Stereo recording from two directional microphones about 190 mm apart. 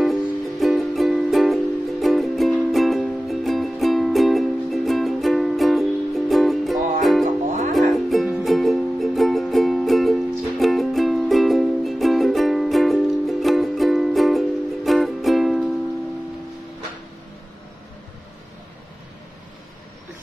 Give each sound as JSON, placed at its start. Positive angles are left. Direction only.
{"t": 0.0, "sound": "music", "side_deg": 0}